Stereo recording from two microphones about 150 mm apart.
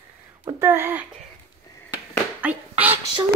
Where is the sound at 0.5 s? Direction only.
15° right (ahead or behind).